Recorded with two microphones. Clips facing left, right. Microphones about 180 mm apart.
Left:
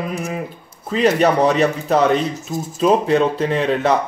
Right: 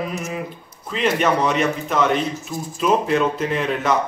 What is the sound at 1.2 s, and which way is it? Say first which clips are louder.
A man's voice: left 3 dB; 35° left (ahead or behind).